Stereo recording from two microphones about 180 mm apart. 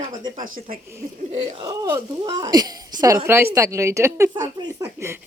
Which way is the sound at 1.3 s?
30° right (ahead or behind).